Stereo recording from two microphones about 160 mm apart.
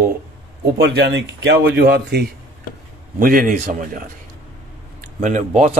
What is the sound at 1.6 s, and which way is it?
Speech, 85° right.